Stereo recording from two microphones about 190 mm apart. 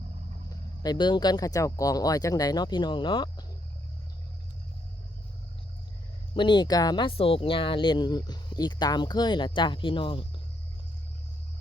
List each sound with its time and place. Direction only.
0.8 s speech: 20° left (ahead or behind)
6.3 s speech: 25° left (ahead or behind)